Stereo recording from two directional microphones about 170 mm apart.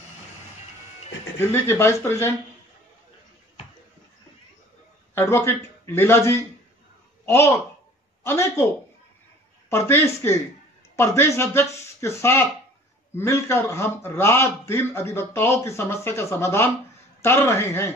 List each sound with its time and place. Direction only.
1.4 s a man's voice: 15° left (ahead or behind)
5.1 s a man's voice: 15° left (ahead or behind)
9.7 s a man's voice: 15° left (ahead or behind)